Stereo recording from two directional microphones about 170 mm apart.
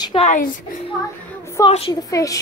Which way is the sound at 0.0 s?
35° left (ahead or behind).